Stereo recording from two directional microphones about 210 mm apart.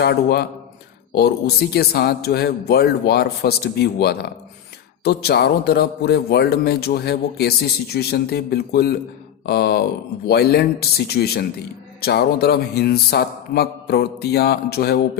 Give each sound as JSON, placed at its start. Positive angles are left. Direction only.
{"t": 0.0, "sound": "speech", "side_deg": 50}